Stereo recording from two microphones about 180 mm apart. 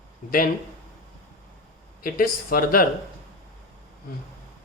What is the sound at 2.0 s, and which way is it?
Speech, 55° left (ahead or behind).